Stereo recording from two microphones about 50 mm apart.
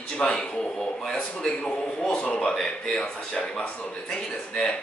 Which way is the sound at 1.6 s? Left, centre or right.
Left.